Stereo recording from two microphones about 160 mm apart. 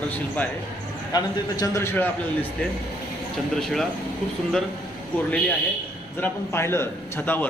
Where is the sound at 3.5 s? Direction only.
Centre (ahead or behind).